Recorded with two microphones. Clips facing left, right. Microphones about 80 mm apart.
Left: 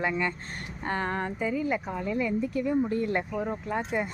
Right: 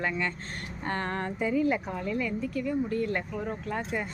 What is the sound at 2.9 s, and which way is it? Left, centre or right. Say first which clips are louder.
Speech: left 2 dB; left.